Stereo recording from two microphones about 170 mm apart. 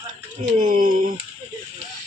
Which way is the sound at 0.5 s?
50° right (ahead or behind).